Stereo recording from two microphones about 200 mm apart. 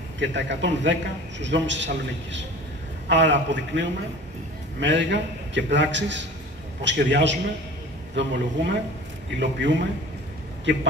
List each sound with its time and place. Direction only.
0.2 s a man's voice: 65° right (ahead or behind)
3.1 s a man's voice: 65° right (ahead or behind)